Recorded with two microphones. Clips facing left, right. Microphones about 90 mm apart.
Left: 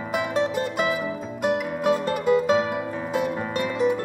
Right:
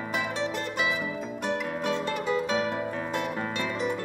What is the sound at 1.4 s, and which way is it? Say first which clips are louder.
Music: left 7 dB; 10° left (ahead or behind).